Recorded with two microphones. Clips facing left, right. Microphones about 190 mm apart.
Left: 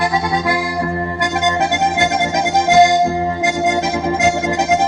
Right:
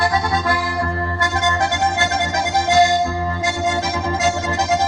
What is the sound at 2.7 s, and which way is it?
Music, 15° left (ahead or behind).